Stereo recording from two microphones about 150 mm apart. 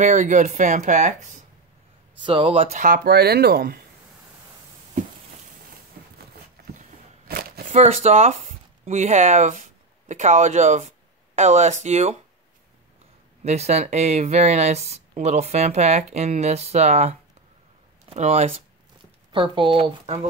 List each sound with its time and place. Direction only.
0.0 s speech: 55° right (ahead or behind)
2.2 s speech: 30° right (ahead or behind)
2.8 s speech: 80° right
7.2 s a sound: 85° right
7.7 s speech: 45° right (ahead or behind)
13.4 s speech: 45° right (ahead or behind)
19.3 s speech: 35° right (ahead or behind)